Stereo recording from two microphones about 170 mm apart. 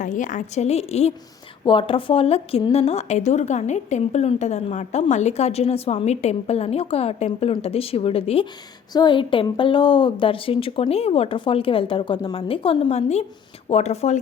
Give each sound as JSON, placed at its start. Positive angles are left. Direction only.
{"t": 0.0, "sound": "speech", "side_deg": 50}